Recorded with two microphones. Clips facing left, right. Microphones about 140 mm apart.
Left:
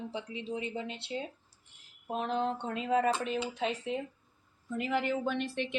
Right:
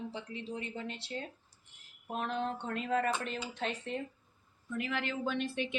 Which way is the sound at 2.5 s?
15° left (ahead or behind).